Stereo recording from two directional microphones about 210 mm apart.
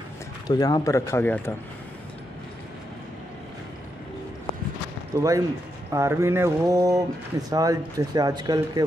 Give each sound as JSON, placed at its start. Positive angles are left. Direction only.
{"t": 0.5, "sound": "speech", "side_deg": 20}
{"t": 5.1, "sound": "speech", "side_deg": -15}